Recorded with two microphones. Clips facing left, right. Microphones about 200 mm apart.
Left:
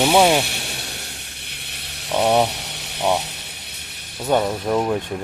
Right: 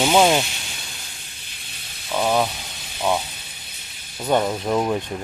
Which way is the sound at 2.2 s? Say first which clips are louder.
Left 3 dB; 30° left (ahead or behind).